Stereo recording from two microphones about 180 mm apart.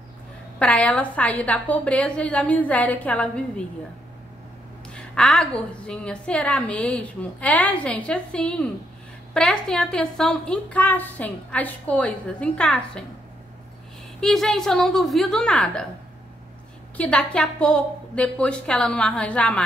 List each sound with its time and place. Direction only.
0.6 s a woman's voice: 5° left (ahead or behind)
4.9 s a woman's voice: 5° left (ahead or behind)
14.2 s a woman's voice: centre (ahead or behind)
16.9 s a woman's voice: 5° left (ahead or behind)